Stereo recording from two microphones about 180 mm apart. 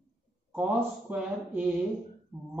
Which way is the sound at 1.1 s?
10° right (ahead or behind).